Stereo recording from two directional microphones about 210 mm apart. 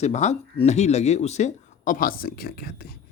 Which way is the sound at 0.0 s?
35° left (ahead or behind).